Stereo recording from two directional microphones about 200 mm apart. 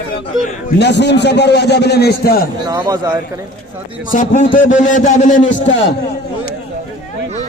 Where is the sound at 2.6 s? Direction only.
20° right (ahead or behind).